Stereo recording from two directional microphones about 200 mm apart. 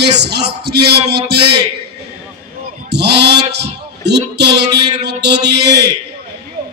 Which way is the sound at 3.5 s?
55° right (ahead or behind).